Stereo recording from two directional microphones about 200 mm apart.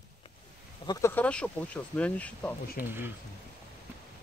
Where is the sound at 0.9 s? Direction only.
10° left (ahead or behind).